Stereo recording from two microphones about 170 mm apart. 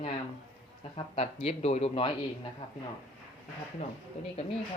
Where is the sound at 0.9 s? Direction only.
35° left (ahead or behind).